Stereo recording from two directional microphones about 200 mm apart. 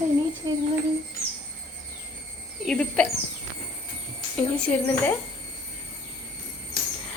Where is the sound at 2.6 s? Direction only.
5° left (ahead or behind).